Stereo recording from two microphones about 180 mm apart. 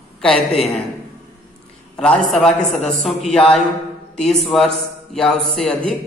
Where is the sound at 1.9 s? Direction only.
5° left (ahead or behind).